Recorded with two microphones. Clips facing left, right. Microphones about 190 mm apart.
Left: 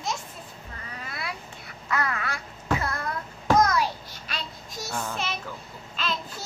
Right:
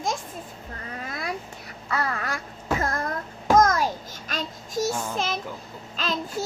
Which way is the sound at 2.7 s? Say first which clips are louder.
Right 6 dB; 45° right (ahead or behind).